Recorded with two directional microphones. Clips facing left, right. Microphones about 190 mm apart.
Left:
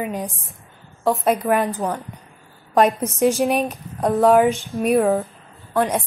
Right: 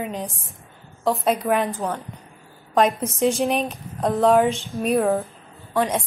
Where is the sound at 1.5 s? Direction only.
15° left (ahead or behind).